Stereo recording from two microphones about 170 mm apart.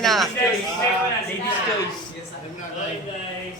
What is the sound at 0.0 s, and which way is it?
Speech, centre (ahead or behind).